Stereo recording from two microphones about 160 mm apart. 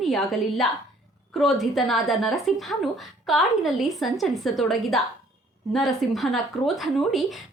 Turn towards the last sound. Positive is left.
turn(degrees=0)  # may be behind; listen again after turning